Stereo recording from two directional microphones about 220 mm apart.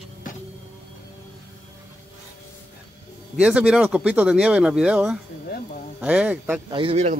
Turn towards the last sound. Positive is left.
turn(degrees=-30)  # may be behind; listen again after turning